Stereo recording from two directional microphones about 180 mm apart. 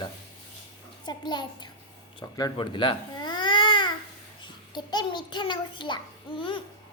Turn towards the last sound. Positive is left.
turn(degrees=30)  # may be behind; listen again after turning